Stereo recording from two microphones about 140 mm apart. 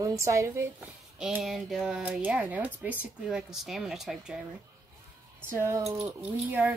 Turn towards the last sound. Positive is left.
turn(degrees=-10)  # may be behind; listen again after turning